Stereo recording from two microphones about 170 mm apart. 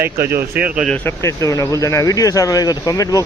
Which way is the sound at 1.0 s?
15° left (ahead or behind).